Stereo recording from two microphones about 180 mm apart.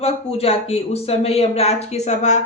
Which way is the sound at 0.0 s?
35° left (ahead or behind).